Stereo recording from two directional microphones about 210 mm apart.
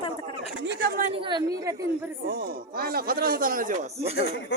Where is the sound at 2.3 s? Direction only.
50° right (ahead or behind).